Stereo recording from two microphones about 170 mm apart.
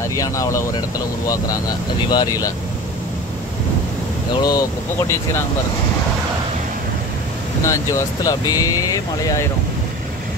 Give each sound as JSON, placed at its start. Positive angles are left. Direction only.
{"t": 0.1, "sound": "speech", "side_deg": 20}
{"t": 4.4, "sound": "speech", "side_deg": 20}
{"t": 7.6, "sound": "speech", "side_deg": 20}